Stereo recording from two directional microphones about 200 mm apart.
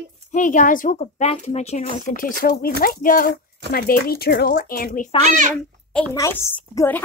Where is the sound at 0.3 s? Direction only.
40° left (ahead or behind).